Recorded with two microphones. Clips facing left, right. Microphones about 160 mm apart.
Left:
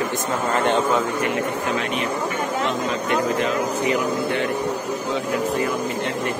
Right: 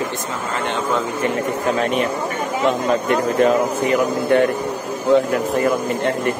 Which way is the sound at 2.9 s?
45° right (ahead or behind).